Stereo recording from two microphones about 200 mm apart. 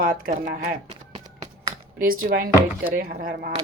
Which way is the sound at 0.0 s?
45° right (ahead or behind).